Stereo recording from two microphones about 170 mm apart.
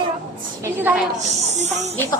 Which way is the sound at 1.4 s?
40° right (ahead or behind).